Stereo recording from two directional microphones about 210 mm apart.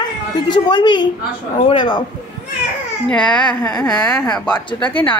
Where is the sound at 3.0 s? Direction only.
5° left (ahead or behind).